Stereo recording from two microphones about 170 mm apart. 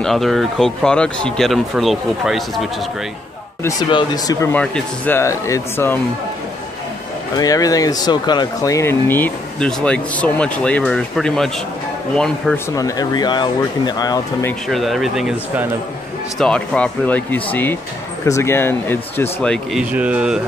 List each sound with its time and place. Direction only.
0.0 s speech: centre (ahead or behind)
3.9 s speech: 20° left (ahead or behind)
7.3 s speech: 20° left (ahead or behind); by 11.5 s centre (ahead or behind)
12.7 s speech: 20° left (ahead or behind)
14.7 s speech: centre (ahead or behind)
19.8 s speech: 10° right (ahead or behind)